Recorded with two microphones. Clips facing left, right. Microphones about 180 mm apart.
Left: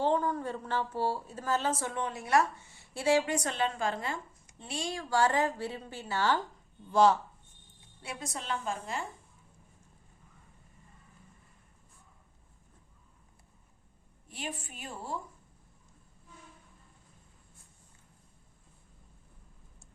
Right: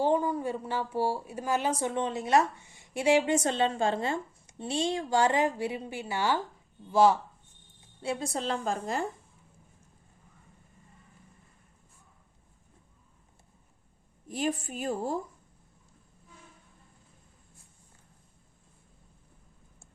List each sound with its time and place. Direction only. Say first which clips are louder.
0.0 s a woman's voice: right 3 dB; 10° right (ahead or behind)
8.0 s a woman's voice: right 7 dB; 30° right (ahead or behind)
14.3 s a woman's voice: right 10 dB; 40° right (ahead or behind)